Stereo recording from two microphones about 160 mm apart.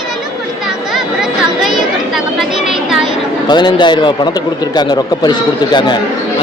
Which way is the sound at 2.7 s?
Centre (ahead or behind).